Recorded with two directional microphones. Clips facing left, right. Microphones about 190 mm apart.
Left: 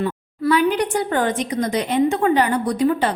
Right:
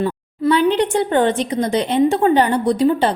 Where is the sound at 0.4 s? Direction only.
25° right (ahead or behind).